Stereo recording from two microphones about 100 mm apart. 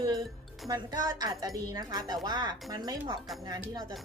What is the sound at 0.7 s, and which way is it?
A woman's voice, 40° right (ahead or behind).